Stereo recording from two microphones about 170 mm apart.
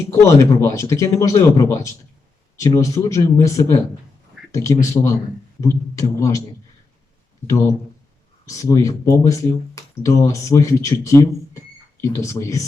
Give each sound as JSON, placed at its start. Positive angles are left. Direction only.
{"t": 0.1, "sound": "speech", "side_deg": 15}
{"t": 8.4, "sound": "speech", "side_deg": 20}